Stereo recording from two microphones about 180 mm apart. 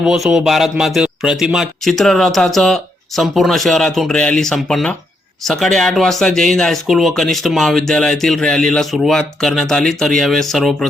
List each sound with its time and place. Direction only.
0.0 s speech: 5° right (ahead or behind)